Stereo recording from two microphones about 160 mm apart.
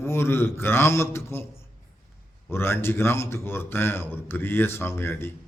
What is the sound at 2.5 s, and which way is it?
Speech, 15° left (ahead or behind).